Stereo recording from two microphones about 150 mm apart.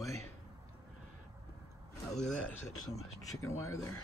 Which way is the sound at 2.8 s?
20° left (ahead or behind).